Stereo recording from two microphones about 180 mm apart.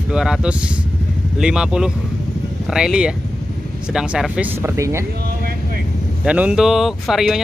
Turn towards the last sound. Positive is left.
turn(degrees=0)  # may be behind; listen again after turning